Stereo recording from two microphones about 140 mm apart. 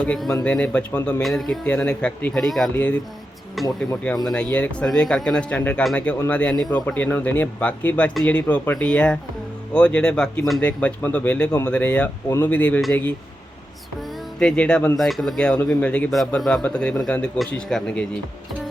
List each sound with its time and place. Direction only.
0.0 s speech: 5° left (ahead or behind)
14.3 s speech: 5° left (ahead or behind)